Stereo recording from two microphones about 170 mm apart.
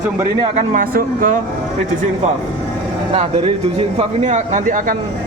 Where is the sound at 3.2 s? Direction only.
35° right (ahead or behind).